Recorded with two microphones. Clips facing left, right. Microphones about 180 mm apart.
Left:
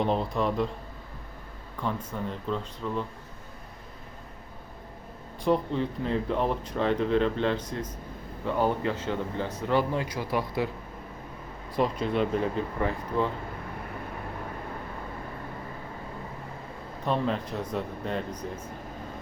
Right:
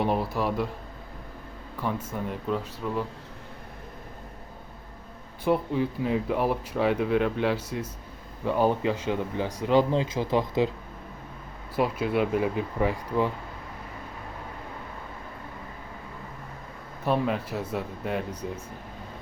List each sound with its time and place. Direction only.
0.0 s speech: 10° right (ahead or behind)
1.8 s speech: 10° right (ahead or behind)
5.5 s speech: 5° right (ahead or behind)
11.8 s speech: 5° right (ahead or behind)
17.1 s speech: 10° right (ahead or behind)